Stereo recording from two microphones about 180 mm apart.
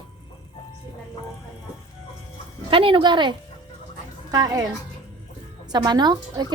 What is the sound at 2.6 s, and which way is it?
A woman's voice, 30° right (ahead or behind).